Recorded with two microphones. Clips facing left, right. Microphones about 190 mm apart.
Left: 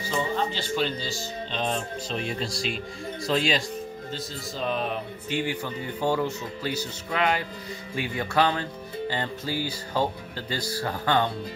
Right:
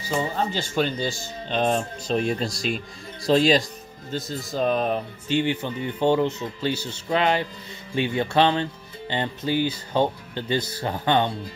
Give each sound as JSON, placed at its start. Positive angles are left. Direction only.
{"t": 0.5, "sound": "speech", "side_deg": -50}
{"t": 5.3, "sound": "speech", "side_deg": -25}